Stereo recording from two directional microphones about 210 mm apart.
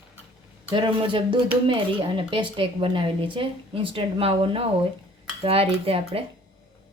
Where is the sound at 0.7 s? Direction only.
25° right (ahead or behind).